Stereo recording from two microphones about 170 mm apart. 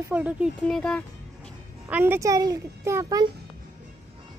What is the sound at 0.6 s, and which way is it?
Speech, 5° left (ahead or behind).